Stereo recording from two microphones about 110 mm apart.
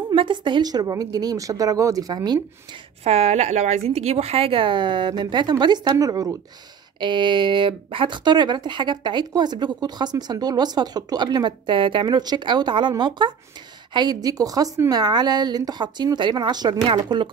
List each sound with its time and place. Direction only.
0.1 s speech: 50° right (ahead or behind)
3.0 s speech: 70° right (ahead or behind); by 6.3 s 35° right (ahead or behind)
7.0 s speech: 45° right (ahead or behind)
16.8 s speech: 50° right (ahead or behind)